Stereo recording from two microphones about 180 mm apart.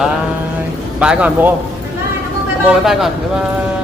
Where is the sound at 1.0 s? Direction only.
5° right (ahead or behind).